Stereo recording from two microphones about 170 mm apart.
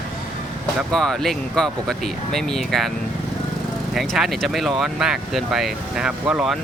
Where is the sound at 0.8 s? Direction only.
Centre (ahead or behind).